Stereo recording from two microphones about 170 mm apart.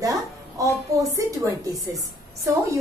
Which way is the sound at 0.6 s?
20° right (ahead or behind).